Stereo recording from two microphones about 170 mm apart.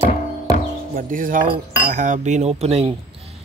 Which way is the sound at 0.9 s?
50° right (ahead or behind).